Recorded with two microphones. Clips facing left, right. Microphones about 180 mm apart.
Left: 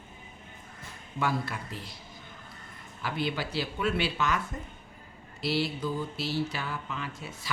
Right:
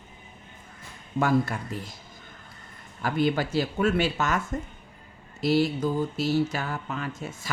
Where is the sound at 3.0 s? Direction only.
45° right (ahead or behind).